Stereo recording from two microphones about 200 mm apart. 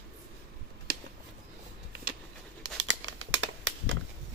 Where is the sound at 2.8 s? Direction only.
65° right (ahead or behind).